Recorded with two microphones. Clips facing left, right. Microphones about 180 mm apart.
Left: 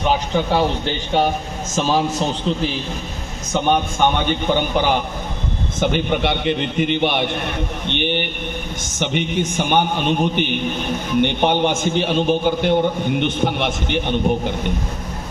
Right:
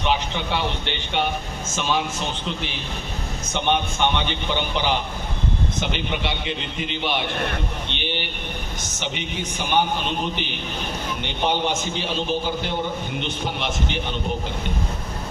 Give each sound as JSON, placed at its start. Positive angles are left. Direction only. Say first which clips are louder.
{"t": 0.0, "sound": "a man's voice", "louder": "left 5 dB", "side_deg": 40}